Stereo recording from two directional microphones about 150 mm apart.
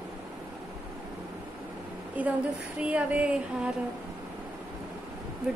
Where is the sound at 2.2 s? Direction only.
10° right (ahead or behind).